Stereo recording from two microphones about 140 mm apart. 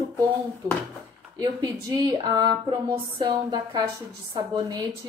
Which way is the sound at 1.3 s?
25° right (ahead or behind).